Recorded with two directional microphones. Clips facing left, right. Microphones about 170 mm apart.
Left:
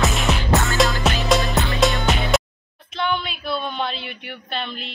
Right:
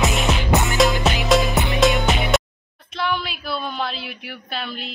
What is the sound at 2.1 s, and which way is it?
Music, centre (ahead or behind).